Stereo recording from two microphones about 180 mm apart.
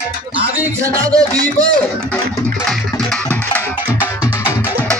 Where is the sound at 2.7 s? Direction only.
5° left (ahead or behind).